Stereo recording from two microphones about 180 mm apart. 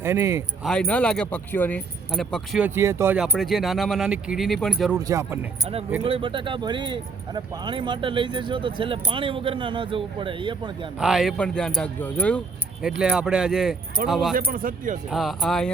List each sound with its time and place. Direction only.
0.0 s speech: 15° right (ahead or behind)
0.6 s speech: 5° left (ahead or behind)
2.6 s speech: 10° right (ahead or behind)
3.2 s speech: centre (ahead or behind)
4.9 s speech: 15° right (ahead or behind)
6.0 s speech: 30° right (ahead or behind)
10.9 s speech: 5° right (ahead or behind)
13.0 s speech: centre (ahead or behind)
14.3 s speech: 50° right (ahead or behind)
15.1 s speech: centre (ahead or behind)